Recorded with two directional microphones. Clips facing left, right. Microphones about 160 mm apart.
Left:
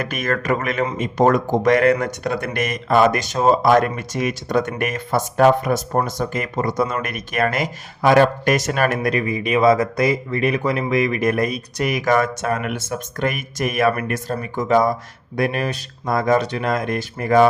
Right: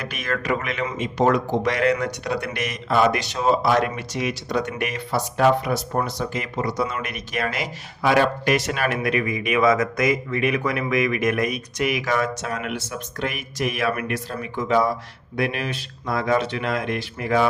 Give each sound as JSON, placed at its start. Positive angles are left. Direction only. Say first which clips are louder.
{"t": 0.0, "sound": "speech", "louder": "left 5 dB", "side_deg": 50}